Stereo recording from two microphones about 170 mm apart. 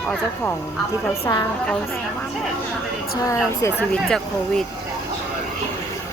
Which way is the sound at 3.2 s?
20° left (ahead or behind).